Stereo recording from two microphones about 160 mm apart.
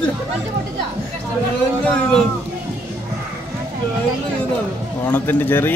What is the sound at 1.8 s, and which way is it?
Speech, 5° left (ahead or behind).